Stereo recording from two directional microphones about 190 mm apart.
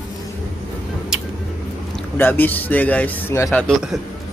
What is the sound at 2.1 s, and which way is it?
A man's voice, 10° left (ahead or behind).